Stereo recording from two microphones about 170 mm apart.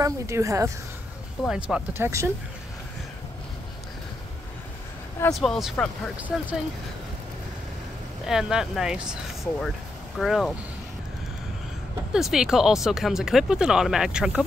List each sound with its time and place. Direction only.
0.0 s speech: 20° right (ahead or behind)
1.4 s speech: 5° right (ahead or behind)
5.3 s speech: centre (ahead or behind)
8.3 s speech: 5° right (ahead or behind)
12.1 s speech: 5° right (ahead or behind)